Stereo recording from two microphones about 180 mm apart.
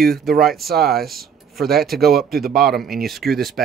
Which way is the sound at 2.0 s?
60° right (ahead or behind).